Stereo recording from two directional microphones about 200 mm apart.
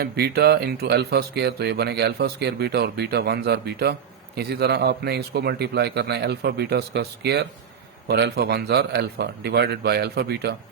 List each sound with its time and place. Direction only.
0.0 s a man's voice: 50° right (ahead or behind)